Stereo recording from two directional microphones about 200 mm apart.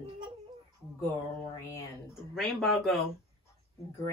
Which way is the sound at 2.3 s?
Centre (ahead or behind).